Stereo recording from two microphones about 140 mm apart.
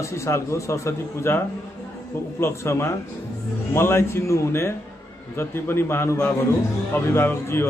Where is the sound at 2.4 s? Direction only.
20° left (ahead or behind).